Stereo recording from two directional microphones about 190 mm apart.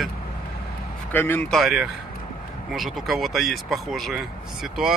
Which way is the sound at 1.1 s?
10° left (ahead or behind).